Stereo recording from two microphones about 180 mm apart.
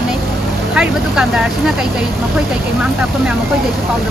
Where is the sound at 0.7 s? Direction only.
5° right (ahead or behind).